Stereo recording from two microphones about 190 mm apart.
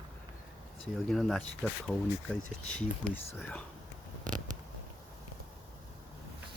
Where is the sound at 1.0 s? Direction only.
Centre (ahead or behind).